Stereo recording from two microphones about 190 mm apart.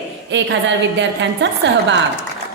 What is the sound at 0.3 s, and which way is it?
A woman's voice, 70° right (ahead or behind).